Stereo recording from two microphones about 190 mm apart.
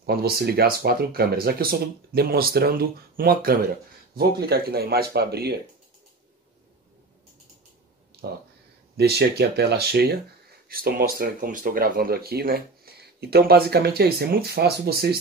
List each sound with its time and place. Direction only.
0.0 s speech: 55° right (ahead or behind)
8.2 s speech: 60° right (ahead or behind)